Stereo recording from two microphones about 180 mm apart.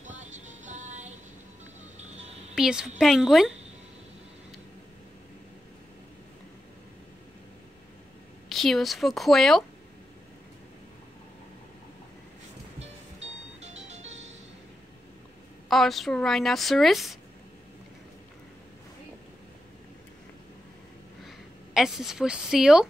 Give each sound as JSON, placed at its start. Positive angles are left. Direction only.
{"t": 0.0, "sound": "music", "side_deg": -40}
{"t": 2.5, "sound": "a woman's voice", "side_deg": -5}
{"t": 8.5, "sound": "a woman's voice", "side_deg": 0}
{"t": 13.6, "sound": "music", "side_deg": -40}
{"t": 15.7, "sound": "a woman's voice", "side_deg": 0}
{"t": 21.7, "sound": "a woman's voice", "side_deg": 0}